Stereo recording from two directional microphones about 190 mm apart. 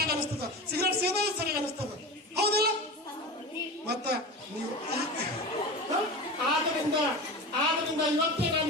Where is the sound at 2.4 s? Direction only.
55° right (ahead or behind).